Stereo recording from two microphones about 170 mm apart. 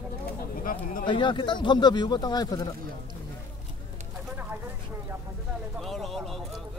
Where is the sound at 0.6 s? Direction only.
55° left (ahead or behind).